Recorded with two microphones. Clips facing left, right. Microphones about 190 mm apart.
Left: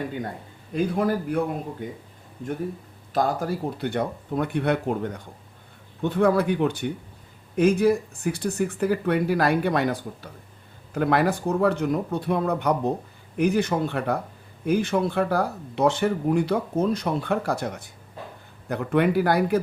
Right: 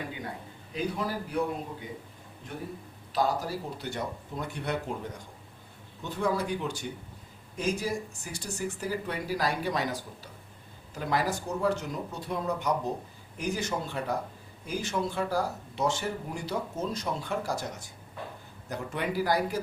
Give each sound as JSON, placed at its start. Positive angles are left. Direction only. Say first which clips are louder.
{"t": 0.7, "sound": "speech", "louder": "left 8 dB", "side_deg": 50}
{"t": 3.1, "sound": "speech", "louder": "left 4 dB", "side_deg": 50}